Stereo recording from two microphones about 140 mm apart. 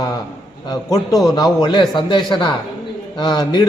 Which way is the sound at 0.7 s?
25° left (ahead or behind).